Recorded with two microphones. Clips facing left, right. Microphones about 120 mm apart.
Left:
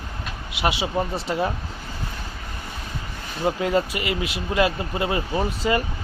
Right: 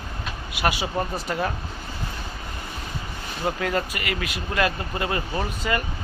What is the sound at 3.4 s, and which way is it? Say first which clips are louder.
Speech: left 4 dB; 20° left (ahead or behind).